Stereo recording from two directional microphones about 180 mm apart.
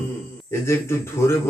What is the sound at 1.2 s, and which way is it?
Mantra, 15° left (ahead or behind).